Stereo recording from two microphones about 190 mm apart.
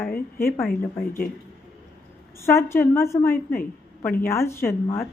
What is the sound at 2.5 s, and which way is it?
Speech, 15° left (ahead or behind).